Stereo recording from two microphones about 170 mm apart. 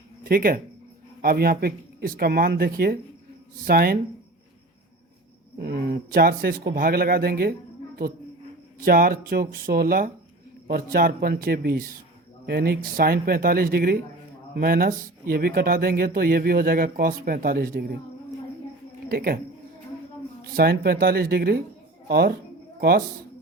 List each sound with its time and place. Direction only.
0.3 s speech: 55° right (ahead or behind)
5.6 s speech: 65° right (ahead or behind)
8.8 s speech: 60° right (ahead or behind)
19.0 s speech: 60° right (ahead or behind)
20.5 s speech: 60° right (ahead or behind)